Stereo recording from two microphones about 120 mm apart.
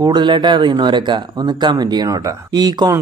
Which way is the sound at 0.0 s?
40° right (ahead or behind).